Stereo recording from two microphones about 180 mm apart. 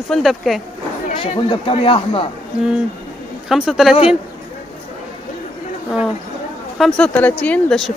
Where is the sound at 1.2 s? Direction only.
30° left (ahead or behind).